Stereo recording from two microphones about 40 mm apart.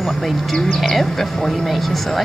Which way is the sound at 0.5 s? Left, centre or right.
Centre.